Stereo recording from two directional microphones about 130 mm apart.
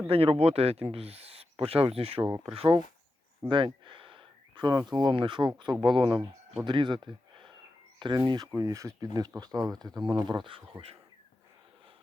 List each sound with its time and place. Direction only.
0.1 s speech: 50° right (ahead or behind)
6.1 s speech: 5° right (ahead or behind)
6.7 s speech: 35° right (ahead or behind)
8.5 s speech: 25° right (ahead or behind); by 10.9 s 45° right (ahead or behind)